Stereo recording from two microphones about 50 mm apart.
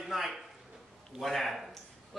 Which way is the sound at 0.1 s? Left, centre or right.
Centre.